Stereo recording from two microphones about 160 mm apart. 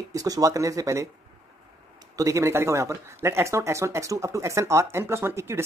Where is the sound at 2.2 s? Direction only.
20° right (ahead or behind).